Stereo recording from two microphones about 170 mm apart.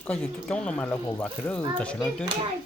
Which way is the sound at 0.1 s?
5° left (ahead or behind).